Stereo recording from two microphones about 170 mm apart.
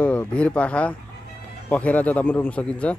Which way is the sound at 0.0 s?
10° left (ahead or behind).